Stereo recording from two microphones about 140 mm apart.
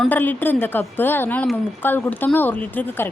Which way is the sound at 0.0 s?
15° left (ahead or behind).